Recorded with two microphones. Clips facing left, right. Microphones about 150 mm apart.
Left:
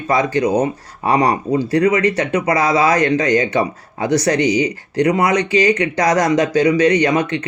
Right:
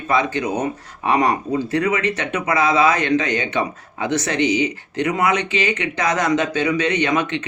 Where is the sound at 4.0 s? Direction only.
35° left (ahead or behind).